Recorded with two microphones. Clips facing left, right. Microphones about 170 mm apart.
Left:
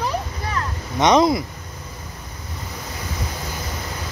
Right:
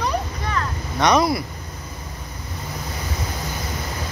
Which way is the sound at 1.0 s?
20° left (ahead or behind).